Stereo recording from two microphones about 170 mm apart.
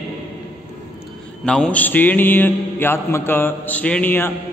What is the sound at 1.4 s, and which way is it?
Mantra, 5° left (ahead or behind).